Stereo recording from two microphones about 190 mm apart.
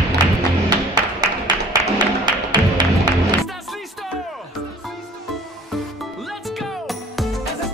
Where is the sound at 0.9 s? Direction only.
20° right (ahead or behind).